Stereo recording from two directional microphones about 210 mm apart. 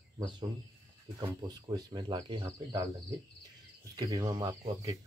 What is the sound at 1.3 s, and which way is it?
Speech, 20° right (ahead or behind).